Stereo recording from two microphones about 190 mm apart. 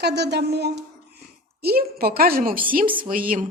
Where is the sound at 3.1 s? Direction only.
45° right (ahead or behind).